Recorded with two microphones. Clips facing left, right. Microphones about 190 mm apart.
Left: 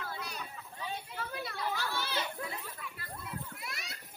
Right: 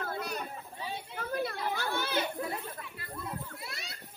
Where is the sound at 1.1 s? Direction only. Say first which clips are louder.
Right 6 dB; 45° right (ahead or behind).